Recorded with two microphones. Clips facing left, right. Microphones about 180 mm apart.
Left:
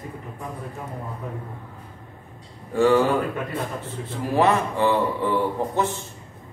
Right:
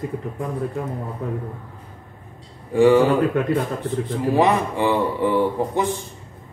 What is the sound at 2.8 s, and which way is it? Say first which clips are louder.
A man's voice: right 4 dB; 15° right (ahead or behind).